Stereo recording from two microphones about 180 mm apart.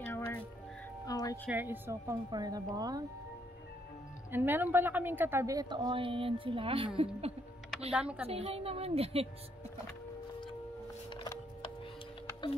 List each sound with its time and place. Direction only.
0.0 s music: 10° left (ahead or behind)
1.5 s a woman's voice: 10° right (ahead or behind)
4.3 s a woman's voice: 10° right (ahead or behind); by 7.3 s 35° right (ahead or behind)
7.9 s a woman's voice: 5° right (ahead or behind)
8.3 s a woman's voice: 35° right (ahead or behind)
11.1 s music: 25° left (ahead or behind)